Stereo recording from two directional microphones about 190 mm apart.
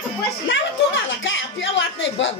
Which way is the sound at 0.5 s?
80° left.